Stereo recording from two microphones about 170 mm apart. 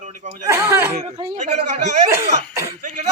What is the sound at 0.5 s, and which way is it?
Speech, 10° right (ahead or behind).